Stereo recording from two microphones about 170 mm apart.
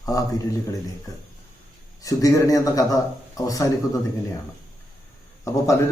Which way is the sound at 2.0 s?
20° left (ahead or behind).